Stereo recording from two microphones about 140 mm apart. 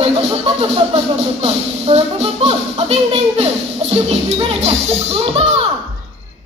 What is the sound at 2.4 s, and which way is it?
Speech, 45° right (ahead or behind).